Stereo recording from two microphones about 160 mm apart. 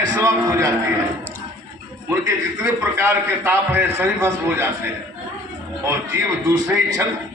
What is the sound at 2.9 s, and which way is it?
A man's voice, 15° right (ahead or behind).